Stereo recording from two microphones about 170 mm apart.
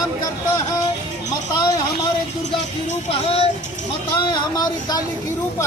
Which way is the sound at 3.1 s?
35° left (ahead or behind).